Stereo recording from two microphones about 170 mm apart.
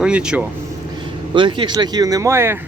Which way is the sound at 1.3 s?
30° right (ahead or behind).